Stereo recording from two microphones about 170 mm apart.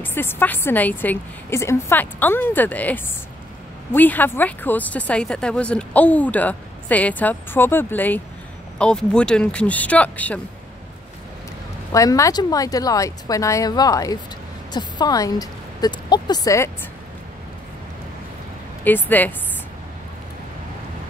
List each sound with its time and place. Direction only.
0.0 s speech: 10° left (ahead or behind)
11.9 s a woman's voice: 20° left (ahead or behind)
18.9 s speech: 10° left (ahead or behind)